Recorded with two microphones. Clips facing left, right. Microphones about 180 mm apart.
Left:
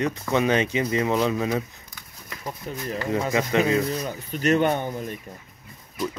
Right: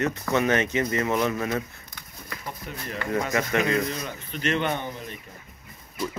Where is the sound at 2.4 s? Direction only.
35° left (ahead or behind).